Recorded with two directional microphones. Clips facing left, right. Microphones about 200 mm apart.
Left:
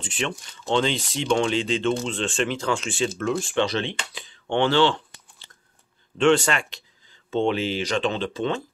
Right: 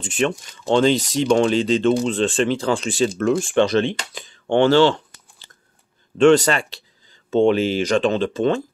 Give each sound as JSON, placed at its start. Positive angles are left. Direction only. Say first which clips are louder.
{"t": 0.0, "sound": "speech", "louder": "right 8 dB", "side_deg": -45}
{"t": 3.4, "sound": "speech", "louder": "right 7 dB", "side_deg": -50}
{"t": 6.1, "sound": "speech", "louder": "right 6 dB", "side_deg": -40}
{"t": 7.2, "sound": "speech", "louder": "right 7 dB", "side_deg": -45}